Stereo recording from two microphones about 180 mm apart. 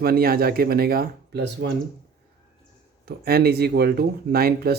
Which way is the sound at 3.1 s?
60° right (ahead or behind).